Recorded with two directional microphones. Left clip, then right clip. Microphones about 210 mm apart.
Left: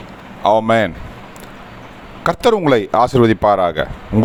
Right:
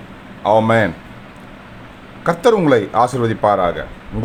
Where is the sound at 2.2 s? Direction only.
40° left (ahead or behind).